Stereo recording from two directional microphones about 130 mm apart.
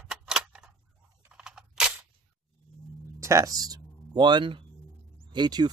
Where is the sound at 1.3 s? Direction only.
5° right (ahead or behind).